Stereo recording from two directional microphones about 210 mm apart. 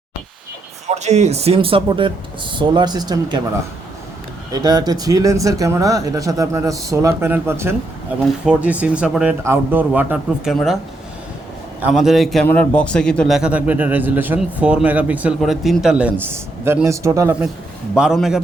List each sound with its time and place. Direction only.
0.9 s speech: 30° right (ahead or behind)
4.5 s a man's voice: 20° right (ahead or behind); by 10.8 s centre (ahead or behind)
11.8 s a man's voice: 5° right (ahead or behind)
17.9 s a man's voice: 5° right (ahead or behind)